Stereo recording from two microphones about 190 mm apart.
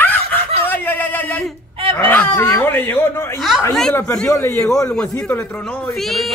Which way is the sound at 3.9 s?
10° left (ahead or behind).